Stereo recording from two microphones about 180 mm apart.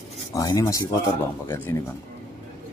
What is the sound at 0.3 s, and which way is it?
Speech, 20° left (ahead or behind).